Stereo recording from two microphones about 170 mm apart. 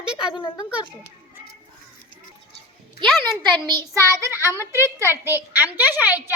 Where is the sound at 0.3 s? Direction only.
30° left (ahead or behind).